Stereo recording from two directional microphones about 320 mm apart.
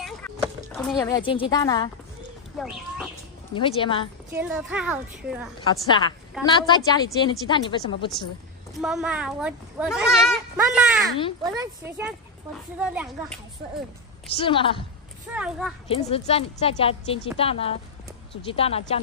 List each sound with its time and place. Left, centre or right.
0.0 s a sound: centre
3.5 s a woman's voice: centre
4.3 s a child's voice: centre
5.6 s a woman's voice: centre
8.8 s a child's voice: centre
11.4 s a child's voice: centre
14.3 s a woman's voice: centre
15.3 s a child's voice: centre
15.9 s a woman's voice: centre